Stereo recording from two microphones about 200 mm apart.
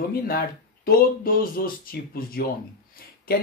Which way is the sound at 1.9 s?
45° left (ahead or behind).